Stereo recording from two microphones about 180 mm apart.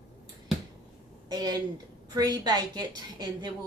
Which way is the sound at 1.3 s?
20° right (ahead or behind).